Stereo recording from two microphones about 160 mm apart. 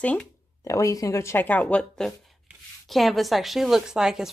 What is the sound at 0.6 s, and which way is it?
Speech, 20° left (ahead or behind).